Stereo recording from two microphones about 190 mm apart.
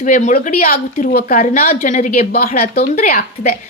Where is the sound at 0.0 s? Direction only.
40° left (ahead or behind).